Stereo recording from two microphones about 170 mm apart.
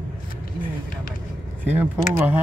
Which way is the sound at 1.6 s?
10° right (ahead or behind).